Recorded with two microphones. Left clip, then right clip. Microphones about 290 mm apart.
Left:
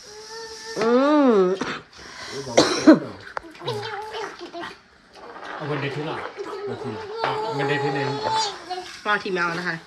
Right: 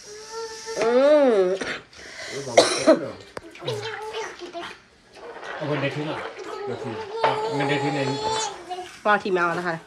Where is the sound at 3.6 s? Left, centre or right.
Left.